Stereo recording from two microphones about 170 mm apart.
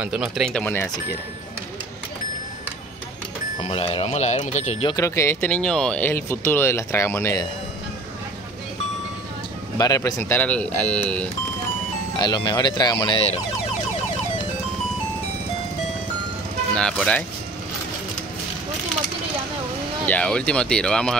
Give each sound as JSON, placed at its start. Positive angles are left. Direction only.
{"t": 0.0, "sound": "speech", "side_deg": -5}
{"t": 3.6, "sound": "speech", "side_deg": 35}
{"t": 4.8, "sound": "speech", "side_deg": 20}
{"t": 9.8, "sound": "speech", "side_deg": 20}
{"t": 12.2, "sound": "speech", "side_deg": 25}
{"t": 16.7, "sound": "speech", "side_deg": 5}
{"t": 20.1, "sound": "speech", "side_deg": 5}